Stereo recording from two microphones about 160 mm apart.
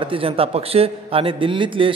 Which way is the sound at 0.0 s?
35° right (ahead or behind).